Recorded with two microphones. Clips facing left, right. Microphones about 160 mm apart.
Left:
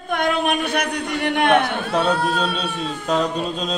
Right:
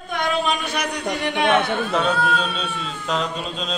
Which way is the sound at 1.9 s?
35° left (ahead or behind).